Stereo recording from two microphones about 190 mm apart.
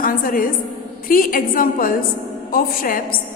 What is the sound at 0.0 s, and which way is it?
A woman's voice, 50° left (ahead or behind).